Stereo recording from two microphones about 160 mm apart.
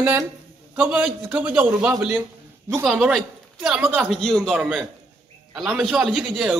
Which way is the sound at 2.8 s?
Centre (ahead or behind).